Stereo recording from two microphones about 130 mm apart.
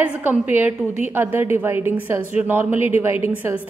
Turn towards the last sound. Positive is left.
turn(degrees=-10)  # may be behind; listen again after turning